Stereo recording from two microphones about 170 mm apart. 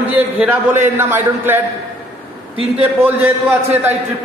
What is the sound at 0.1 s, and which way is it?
A man's voice, 10° right (ahead or behind).